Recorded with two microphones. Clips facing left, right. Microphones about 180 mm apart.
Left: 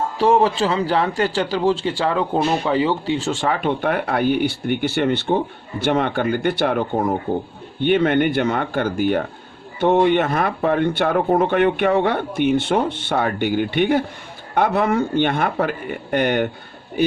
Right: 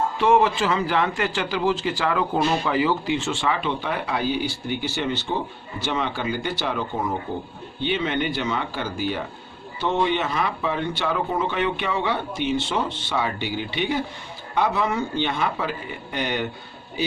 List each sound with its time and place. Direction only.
0.2 s a man's voice: 35° left (ahead or behind); by 16.5 s 55° left (ahead or behind)